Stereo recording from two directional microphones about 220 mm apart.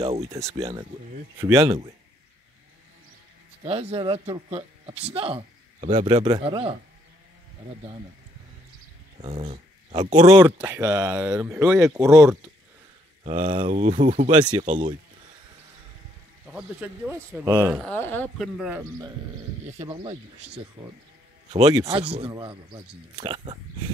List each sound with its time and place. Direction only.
0.0 s speech: 30° right (ahead or behind)
0.3 s speech: 15° right (ahead or behind)
0.6 s speech: 25° right (ahead or behind)
1.4 s speech: 15° right (ahead or behind)
3.6 s speech: 30° right (ahead or behind)
5.1 s a sound: 25° right (ahead or behind)
5.9 s speech: 25° right (ahead or behind)
9.2 s speech: 25° right (ahead or behind)
13.2 s speech: 25° right (ahead or behind)
14.4 s speech: 20° right (ahead or behind)
16.4 s speech: 5° right (ahead or behind)
17.8 s speech: 10° left (ahead or behind); by 19.1 s 15° right (ahead or behind)
19.6 s speech: 25° right (ahead or behind)